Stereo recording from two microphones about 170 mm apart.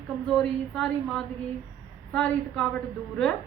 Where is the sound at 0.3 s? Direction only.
Centre (ahead or behind).